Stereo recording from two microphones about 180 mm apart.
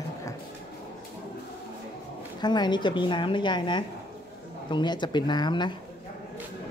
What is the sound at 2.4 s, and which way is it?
A woman's voice, 25° left (ahead or behind).